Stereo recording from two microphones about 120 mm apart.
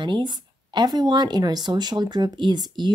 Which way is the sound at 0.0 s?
40° right (ahead or behind).